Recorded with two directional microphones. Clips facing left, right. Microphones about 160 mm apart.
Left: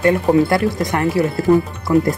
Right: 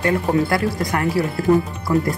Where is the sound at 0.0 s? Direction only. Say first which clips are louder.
Left 5 dB; 25° left (ahead or behind).